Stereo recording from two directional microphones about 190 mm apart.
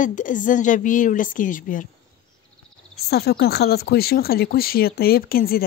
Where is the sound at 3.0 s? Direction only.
55° left (ahead or behind).